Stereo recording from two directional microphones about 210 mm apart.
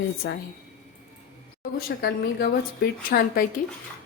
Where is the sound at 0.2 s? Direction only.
55° left (ahead or behind).